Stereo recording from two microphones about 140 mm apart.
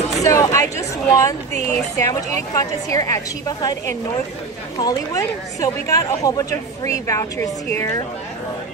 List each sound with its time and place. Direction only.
0.2 s a woman's voice: 20° left (ahead or behind)
4.7 s a woman's voice: 25° left (ahead or behind)